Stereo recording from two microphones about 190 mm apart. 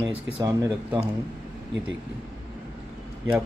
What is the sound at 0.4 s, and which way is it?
Speech, 20° right (ahead or behind).